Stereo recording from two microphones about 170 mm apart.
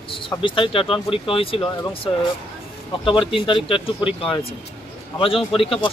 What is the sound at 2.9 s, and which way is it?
Speech, 30° left (ahead or behind).